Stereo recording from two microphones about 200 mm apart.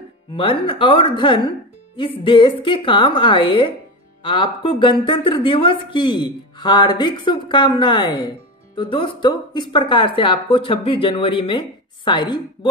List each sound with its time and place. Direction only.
0.3 s a woman's voice: 25° left (ahead or behind)